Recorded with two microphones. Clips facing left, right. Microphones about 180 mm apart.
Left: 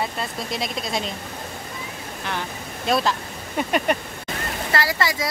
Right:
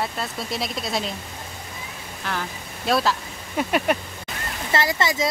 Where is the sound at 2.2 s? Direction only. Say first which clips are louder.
Even; centre (ahead or behind).